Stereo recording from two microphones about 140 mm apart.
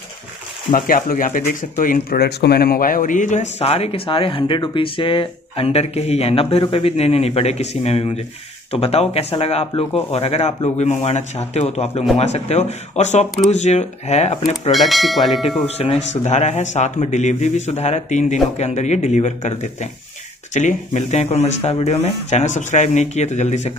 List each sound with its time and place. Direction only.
0.7 s speech: 80° left; by 14.4 s 50° left (ahead or behind)
14.7 s speech: centre (ahead or behind)
15.6 s a man's voice: 45° left (ahead or behind)